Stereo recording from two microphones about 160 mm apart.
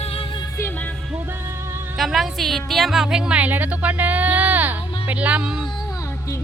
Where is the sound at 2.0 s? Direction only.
Centre (ahead or behind).